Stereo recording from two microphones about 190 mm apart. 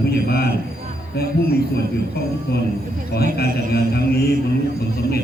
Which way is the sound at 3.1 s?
55° left (ahead or behind).